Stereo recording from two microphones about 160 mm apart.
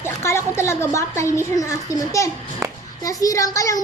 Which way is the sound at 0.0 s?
15° left (ahead or behind).